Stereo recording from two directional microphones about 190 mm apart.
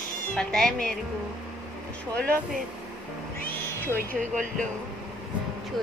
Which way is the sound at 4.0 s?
40° right (ahead or behind).